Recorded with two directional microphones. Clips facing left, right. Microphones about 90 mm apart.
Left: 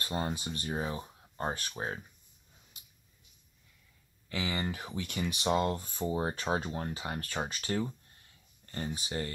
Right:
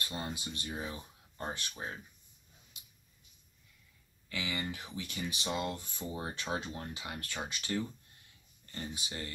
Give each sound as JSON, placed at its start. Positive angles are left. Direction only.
{"t": 0.0, "sound": "speech", "side_deg": 35}
{"t": 4.3, "sound": "speech", "side_deg": 30}
{"t": 4.6, "sound": "speech", "side_deg": 45}
{"t": 5.0, "sound": "speech", "side_deg": 55}